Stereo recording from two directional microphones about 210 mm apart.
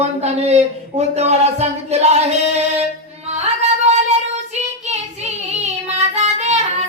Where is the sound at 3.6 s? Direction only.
30° right (ahead or behind).